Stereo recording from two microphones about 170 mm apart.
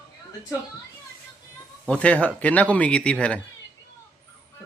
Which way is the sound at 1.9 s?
10° left (ahead or behind).